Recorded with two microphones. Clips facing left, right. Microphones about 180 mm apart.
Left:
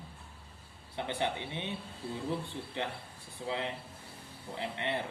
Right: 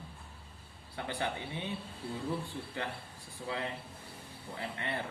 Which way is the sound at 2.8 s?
20° left (ahead or behind).